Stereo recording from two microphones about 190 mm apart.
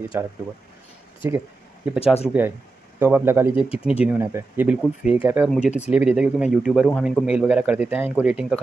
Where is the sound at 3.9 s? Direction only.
10° right (ahead or behind).